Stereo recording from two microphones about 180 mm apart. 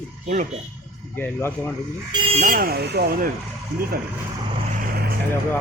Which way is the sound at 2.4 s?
50° right (ahead or behind).